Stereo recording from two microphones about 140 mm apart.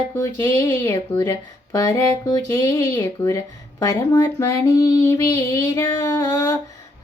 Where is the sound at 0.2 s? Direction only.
20° left (ahead or behind).